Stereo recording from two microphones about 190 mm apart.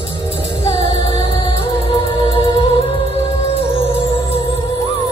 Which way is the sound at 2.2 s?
30° left (ahead or behind).